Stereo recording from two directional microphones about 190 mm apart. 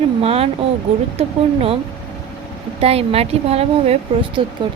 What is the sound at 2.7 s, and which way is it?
Speech, 30° right (ahead or behind).